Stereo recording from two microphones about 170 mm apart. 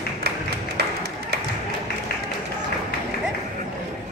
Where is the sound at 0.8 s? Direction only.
70° right (ahead or behind).